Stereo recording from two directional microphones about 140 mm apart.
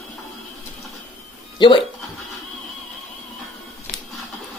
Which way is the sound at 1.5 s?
35° left (ahead or behind).